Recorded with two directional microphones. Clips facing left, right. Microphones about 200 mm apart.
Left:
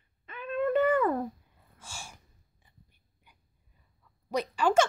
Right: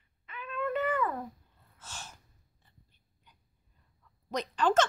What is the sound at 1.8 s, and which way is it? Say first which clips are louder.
Gasp: left 1 dB; 10° left (ahead or behind).